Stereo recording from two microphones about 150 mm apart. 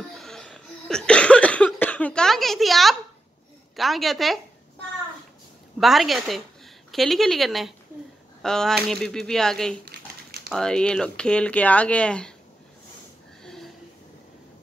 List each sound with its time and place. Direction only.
0.1 s cough: 5° left (ahead or behind)
3.7 s speech: centre (ahead or behind)
5.8 s speech: centre (ahead or behind)
9.8 s crumpling: 90° right
10.5 s speech: 5° left (ahead or behind)
13.4 s a sound: 5° left (ahead or behind)